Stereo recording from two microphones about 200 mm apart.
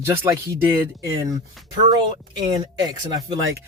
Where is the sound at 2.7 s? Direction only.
20° right (ahead or behind).